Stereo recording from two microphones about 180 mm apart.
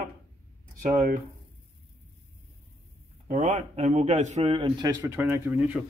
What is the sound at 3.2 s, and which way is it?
A man's voice, 40° right (ahead or behind).